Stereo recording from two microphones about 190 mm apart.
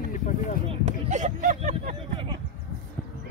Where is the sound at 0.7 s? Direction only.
40° right (ahead or behind).